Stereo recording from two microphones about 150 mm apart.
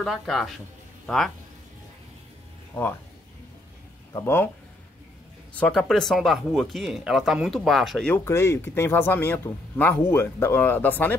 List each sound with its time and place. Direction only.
0.0 s speech: centre (ahead or behind)
4.1 s speech: 15° left (ahead or behind)
5.5 s speech: 10° left (ahead or behind)
8.1 s speech: 15° left (ahead or behind)